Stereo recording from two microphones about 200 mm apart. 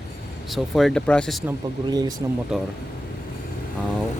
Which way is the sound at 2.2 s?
15° right (ahead or behind).